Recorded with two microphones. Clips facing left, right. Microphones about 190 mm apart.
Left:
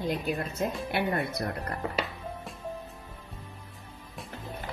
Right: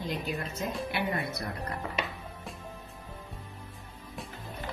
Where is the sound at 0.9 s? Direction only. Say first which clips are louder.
Left 3 dB; 60° left (ahead or behind).